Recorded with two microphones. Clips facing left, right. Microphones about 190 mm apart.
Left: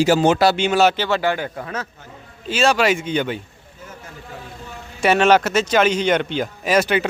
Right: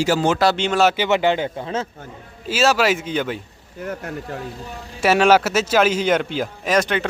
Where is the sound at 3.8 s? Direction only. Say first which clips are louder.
Right 11 dB; 70° right (ahead or behind).